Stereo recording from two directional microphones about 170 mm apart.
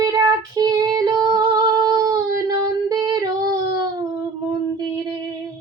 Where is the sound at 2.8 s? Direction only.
25° right (ahead or behind).